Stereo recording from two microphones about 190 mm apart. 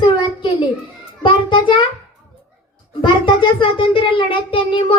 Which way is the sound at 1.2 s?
25° left (ahead or behind).